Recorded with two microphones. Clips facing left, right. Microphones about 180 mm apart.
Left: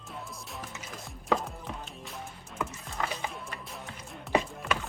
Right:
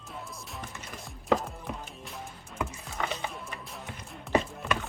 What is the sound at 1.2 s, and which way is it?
Chopping, centre (ahead or behind).